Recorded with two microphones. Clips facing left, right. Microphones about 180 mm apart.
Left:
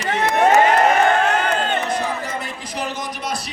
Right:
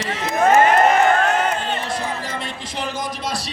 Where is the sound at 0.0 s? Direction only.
65° left (ahead or behind).